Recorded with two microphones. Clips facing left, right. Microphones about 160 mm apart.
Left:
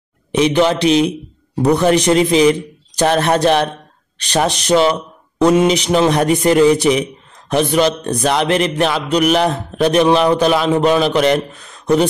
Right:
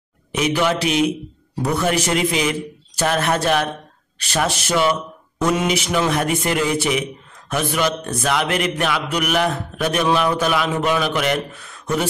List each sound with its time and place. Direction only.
0.3 s a man's voice: 30° left (ahead or behind)
4.6 s a man's voice: 30° left (ahead or behind)